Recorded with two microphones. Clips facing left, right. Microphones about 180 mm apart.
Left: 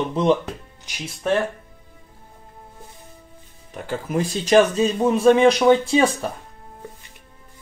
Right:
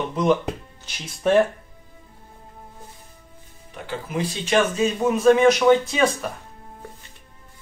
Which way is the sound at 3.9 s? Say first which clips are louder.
Left 3 dB; 45° left (ahead or behind).